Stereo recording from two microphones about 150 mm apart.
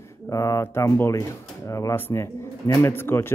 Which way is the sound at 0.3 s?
20° left (ahead or behind).